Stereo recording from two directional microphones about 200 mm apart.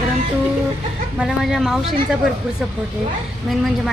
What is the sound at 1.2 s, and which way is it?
Speech, centre (ahead or behind).